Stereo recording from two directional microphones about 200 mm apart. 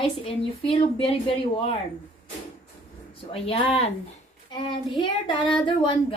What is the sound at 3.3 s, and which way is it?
A woman's voice, 30° left (ahead or behind).